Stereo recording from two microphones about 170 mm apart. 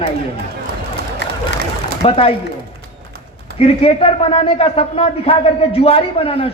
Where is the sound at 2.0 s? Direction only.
35° left (ahead or behind).